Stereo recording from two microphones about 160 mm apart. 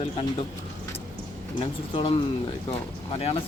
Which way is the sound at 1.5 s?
30° left (ahead or behind).